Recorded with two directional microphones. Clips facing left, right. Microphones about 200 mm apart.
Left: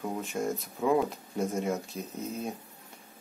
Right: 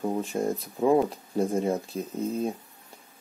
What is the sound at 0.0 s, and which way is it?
Speech, 30° right (ahead or behind).